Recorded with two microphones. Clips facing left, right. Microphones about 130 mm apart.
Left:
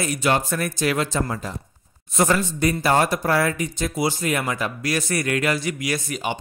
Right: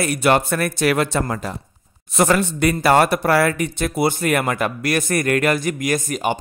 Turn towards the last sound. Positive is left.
turn(degrees=-45)  # may be behind; listen again after turning